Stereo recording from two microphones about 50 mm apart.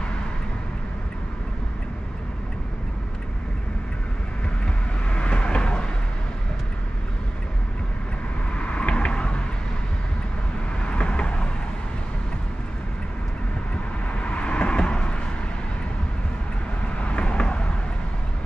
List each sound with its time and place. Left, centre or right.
5.1 s vehicle: left
8.5 s vehicle: left
10.8 s vehicle: left
14.1 s vehicle: left
17.0 s vehicle: left